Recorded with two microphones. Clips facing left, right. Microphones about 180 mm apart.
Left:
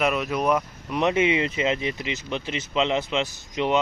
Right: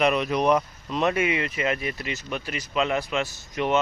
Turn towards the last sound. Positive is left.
turn(degrees=20)  # may be behind; listen again after turning